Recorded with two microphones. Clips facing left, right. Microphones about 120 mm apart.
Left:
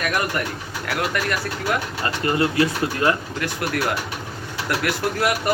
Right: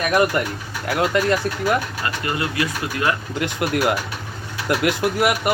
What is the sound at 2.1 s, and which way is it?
Speech, 30° left (ahead or behind).